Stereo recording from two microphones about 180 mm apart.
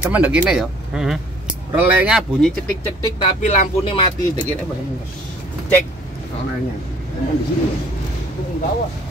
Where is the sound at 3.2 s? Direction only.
40° left (ahead or behind).